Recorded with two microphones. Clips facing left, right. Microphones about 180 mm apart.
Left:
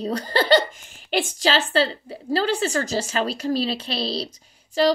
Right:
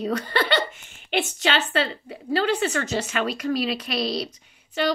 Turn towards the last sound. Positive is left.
turn(degrees=35)  # may be behind; listen again after turning